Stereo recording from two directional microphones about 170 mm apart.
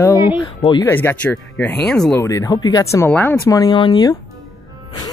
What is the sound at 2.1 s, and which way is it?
Speech, 20° left (ahead or behind).